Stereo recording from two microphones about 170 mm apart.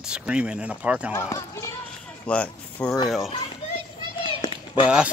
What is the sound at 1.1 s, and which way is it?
Speech, 20° left (ahead or behind).